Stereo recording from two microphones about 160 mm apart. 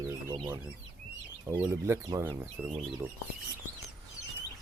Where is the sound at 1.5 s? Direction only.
15° right (ahead or behind).